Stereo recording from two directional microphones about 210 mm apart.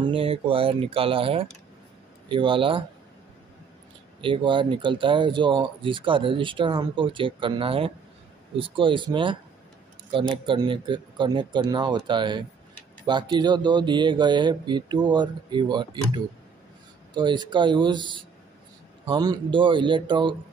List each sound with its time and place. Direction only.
0.0 s speech: 25° right (ahead or behind)
4.2 s speech: 25° right (ahead or behind)